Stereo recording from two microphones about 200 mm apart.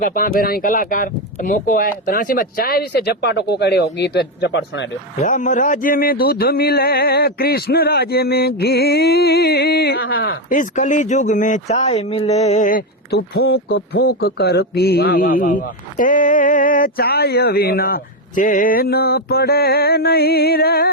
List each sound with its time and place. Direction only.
0.0 s speech: 45° left (ahead or behind); by 4.9 s 60° left (ahead or behind)
5.2 s speech: 40° left (ahead or behind)
10.2 s speech: 40° left (ahead or behind)